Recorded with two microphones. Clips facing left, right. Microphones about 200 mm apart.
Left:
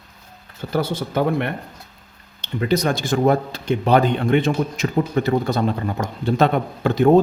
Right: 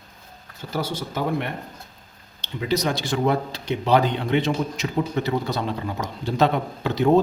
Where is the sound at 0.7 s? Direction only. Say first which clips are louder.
Left 6 dB; 55° left (ahead or behind).